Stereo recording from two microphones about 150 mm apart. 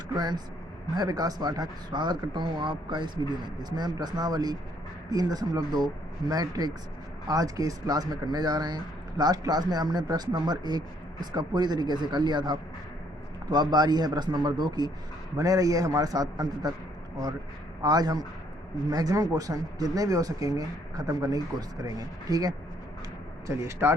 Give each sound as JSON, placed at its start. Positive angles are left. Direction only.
{"t": 0.2, "sound": "speech", "side_deg": -30}
{"t": 17.8, "sound": "speech", "side_deg": -25}